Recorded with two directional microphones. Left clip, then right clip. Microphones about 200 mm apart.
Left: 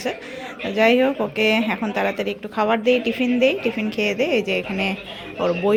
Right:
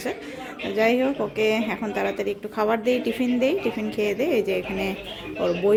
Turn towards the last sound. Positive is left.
turn(degrees=0)  # may be behind; listen again after turning